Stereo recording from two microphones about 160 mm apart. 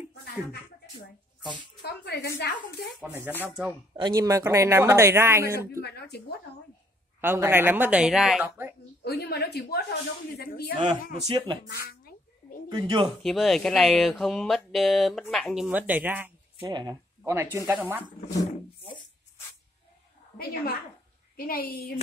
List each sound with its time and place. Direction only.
1.8 s a woman's voice: 90° left
3.0 s speech: 10° right (ahead or behind)
3.9 s speech: 25° right (ahead or behind)
5.8 s speech: 85° left
7.2 s speech: 15° right (ahead or behind)
9.0 s a woman's voice: 90° left; by 10.7 s 70° left (ahead or behind)
11.2 s speech: 25° right (ahead or behind)
11.6 s a sound: 70° left (ahead or behind)
12.6 s speech: 30° right (ahead or behind)
13.2 s speech: centre (ahead or behind)
16.6 s speech: 25° right (ahead or behind)
18.8 s music: 30° left (ahead or behind)
20.3 s a woman's voice: 70° left (ahead or behind)